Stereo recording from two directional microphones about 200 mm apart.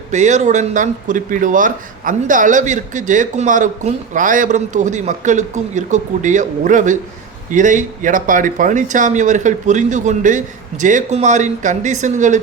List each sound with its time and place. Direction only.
0.1 s speech: 35° right (ahead or behind)